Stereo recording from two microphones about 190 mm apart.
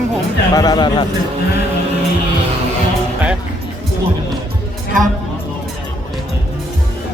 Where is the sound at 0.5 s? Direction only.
20° left (ahead or behind).